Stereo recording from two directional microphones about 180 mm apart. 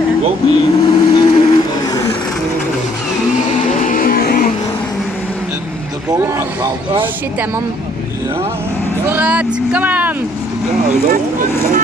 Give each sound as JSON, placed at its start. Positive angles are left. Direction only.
{"t": 0.5, "sound": "vehicle", "side_deg": 25}
{"t": 3.8, "sound": "music", "side_deg": 50}
{"t": 6.0, "sound": "a sound", "side_deg": -20}
{"t": 9.1, "sound": "speech", "side_deg": -10}